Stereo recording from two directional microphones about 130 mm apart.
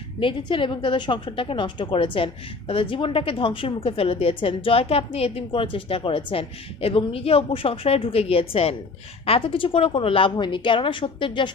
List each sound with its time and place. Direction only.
0.2 s a woman's voice: 40° left (ahead or behind)